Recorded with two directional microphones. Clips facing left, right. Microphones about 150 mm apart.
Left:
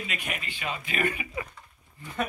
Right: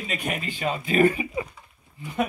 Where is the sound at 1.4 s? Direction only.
15° right (ahead or behind).